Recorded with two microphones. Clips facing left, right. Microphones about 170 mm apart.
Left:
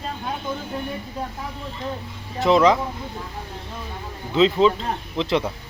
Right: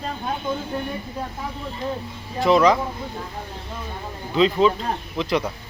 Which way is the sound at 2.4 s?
20° left (ahead or behind).